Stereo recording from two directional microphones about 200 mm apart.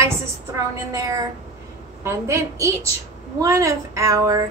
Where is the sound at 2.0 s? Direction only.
15° right (ahead or behind).